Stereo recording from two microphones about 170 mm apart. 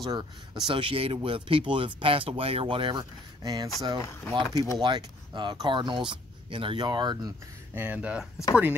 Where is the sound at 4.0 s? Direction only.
15° left (ahead or behind).